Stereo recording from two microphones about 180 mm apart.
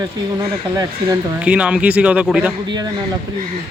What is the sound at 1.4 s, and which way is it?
Speech, 5° right (ahead or behind).